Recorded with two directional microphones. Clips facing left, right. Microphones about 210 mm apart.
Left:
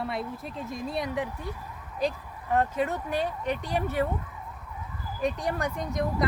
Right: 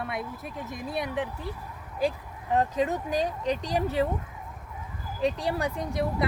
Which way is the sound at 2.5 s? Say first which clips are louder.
Right 1 dB; 15° right (ahead or behind).